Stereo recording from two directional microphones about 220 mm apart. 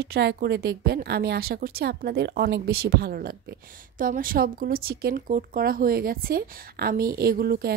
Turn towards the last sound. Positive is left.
turn(degrees=-45)  # may be behind; listen again after turning